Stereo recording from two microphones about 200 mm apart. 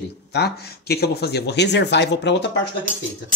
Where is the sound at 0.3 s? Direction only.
55° left (ahead or behind).